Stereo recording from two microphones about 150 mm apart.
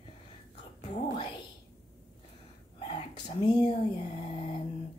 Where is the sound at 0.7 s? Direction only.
50° left (ahead or behind).